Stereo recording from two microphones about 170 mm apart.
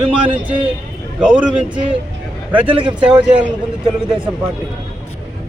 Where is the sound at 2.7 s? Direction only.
30° right (ahead or behind).